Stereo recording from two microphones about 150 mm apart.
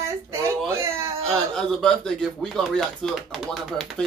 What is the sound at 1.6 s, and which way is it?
Speech, 5° left (ahead or behind).